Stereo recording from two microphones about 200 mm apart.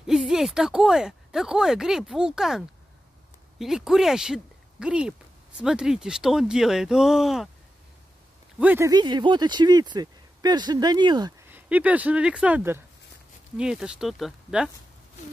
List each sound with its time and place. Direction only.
0.0 s speech: centre (ahead or behind)
8.5 s speech: 10° right (ahead or behind)
11.4 s speech: 10° right (ahead or behind)